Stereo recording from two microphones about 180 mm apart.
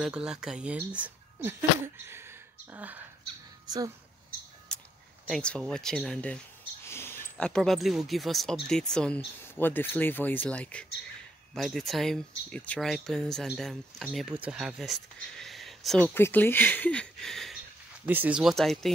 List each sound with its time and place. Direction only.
0.0 s speech: 5° right (ahead or behind)
3.6 s speech: 20° right (ahead or behind)
5.3 s speech: 5° left (ahead or behind)
16.2 s speech: 10° left (ahead or behind)
18.0 s speech: 10° right (ahead or behind)